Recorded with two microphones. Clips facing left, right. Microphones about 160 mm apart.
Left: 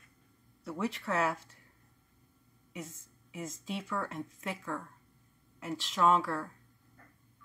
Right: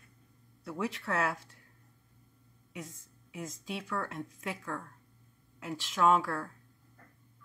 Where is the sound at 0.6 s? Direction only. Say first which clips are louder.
Even; centre (ahead or behind).